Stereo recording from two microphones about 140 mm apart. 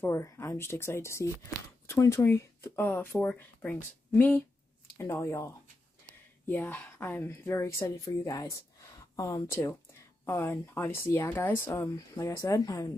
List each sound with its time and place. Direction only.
0.0 s speech: 20° left (ahead or behind)